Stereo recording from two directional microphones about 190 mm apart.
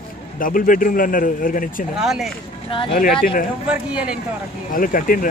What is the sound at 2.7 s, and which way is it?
Speech, 30° left (ahead or behind).